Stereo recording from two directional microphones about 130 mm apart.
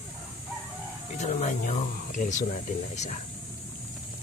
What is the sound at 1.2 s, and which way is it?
Speech, 60° left (ahead or behind).